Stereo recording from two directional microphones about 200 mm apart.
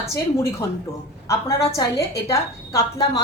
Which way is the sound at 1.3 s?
15° left (ahead or behind).